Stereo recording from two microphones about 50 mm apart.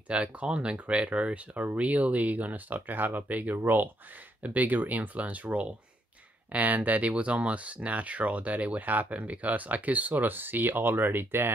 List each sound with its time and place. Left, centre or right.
0.1 s speech: right